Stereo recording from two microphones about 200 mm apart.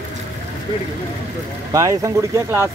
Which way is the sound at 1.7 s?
15° right (ahead or behind).